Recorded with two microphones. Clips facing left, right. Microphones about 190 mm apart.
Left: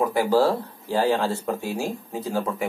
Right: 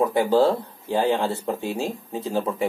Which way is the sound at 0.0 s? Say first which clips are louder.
Right 1 dB; 20° right (ahead or behind).